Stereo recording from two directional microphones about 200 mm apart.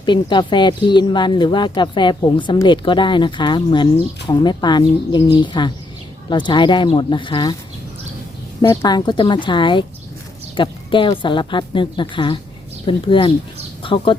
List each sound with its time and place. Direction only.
0.0 s speech: 25° left (ahead or behind)
8.6 s speech: 20° left (ahead or behind)